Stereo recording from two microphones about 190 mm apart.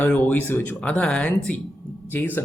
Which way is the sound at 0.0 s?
5° left (ahead or behind).